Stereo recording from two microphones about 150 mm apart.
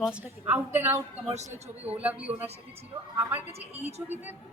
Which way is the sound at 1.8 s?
10° right (ahead or behind).